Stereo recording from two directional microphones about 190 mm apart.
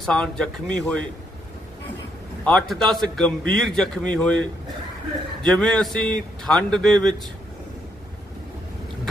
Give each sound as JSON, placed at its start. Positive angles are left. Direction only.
{"t": 0.0, "sound": "a man's voice", "side_deg": 5}
{"t": 2.4, "sound": "a man's voice", "side_deg": 5}